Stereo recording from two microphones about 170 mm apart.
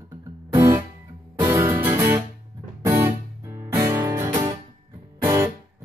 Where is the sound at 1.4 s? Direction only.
15° right (ahead or behind).